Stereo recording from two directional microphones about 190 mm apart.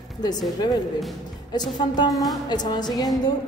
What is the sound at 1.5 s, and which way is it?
Speech, 20° left (ahead or behind).